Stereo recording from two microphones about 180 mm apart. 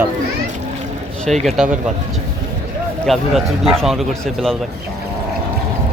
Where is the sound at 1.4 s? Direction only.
5° right (ahead or behind).